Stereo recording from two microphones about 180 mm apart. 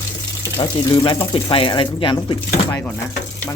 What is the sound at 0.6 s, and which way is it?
Speech, 25° left (ahead or behind).